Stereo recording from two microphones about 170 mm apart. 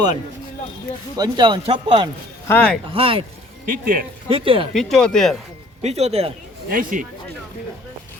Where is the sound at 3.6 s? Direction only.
55° right (ahead or behind).